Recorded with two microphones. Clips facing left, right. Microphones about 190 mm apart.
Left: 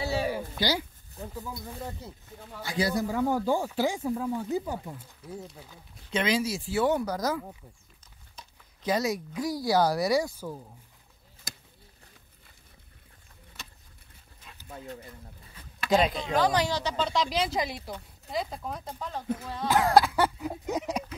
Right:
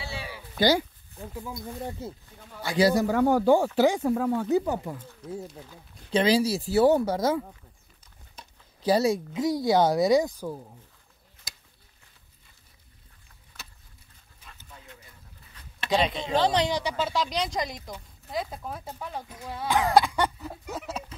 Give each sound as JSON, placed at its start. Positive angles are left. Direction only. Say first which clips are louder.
{"t": 0.0, "sound": "a sound", "louder": "left 9 dB", "side_deg": 40}
{"t": 0.6, "sound": "speech", "louder": "right 9 dB", "side_deg": -50}
{"t": 1.3, "sound": "speech", "louder": "right 2 dB", "side_deg": -15}
{"t": 2.6, "sound": "speech", "louder": "right 6 dB", "side_deg": -80}
{"t": 6.1, "sound": "speech", "louder": "right 5 dB", "side_deg": -35}
{"t": 13.5, "sound": "vehicle", "louder": "left 1 dB", "side_deg": 5}
{"t": 15.9, "sound": "speech", "louder": "left 1 dB", "side_deg": 0}
{"t": 16.3, "sound": "speech", "louder": "right 2 dB", "side_deg": -25}
{"t": 19.7, "sound": "speech", "louder": "even", "side_deg": 0}